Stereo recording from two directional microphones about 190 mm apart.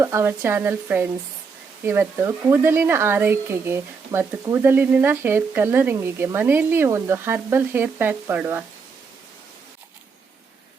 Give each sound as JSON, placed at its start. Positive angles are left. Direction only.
{"t": 0.0, "sound": "speech", "side_deg": -15}